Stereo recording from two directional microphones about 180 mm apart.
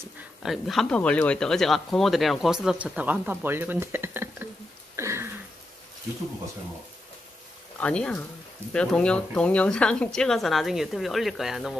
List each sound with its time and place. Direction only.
0.4 s speech: centre (ahead or behind)
4.9 s a sound: 15° right (ahead or behind)
7.8 s speech: 5° left (ahead or behind)